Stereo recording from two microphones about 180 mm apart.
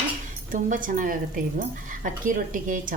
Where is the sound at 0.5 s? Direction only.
50° right (ahead or behind).